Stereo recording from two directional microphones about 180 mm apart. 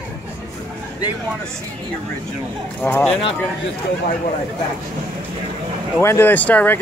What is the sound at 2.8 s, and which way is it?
Speech, 10° left (ahead or behind).